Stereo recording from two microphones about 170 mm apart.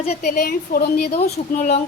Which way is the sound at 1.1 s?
45° left (ahead or behind).